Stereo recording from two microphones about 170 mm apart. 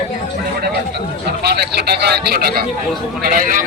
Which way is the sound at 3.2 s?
55° right (ahead or behind).